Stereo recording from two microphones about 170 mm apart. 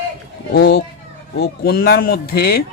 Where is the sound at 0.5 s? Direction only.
70° left (ahead or behind).